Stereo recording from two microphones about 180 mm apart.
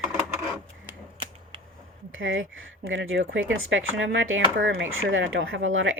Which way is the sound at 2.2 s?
90° right.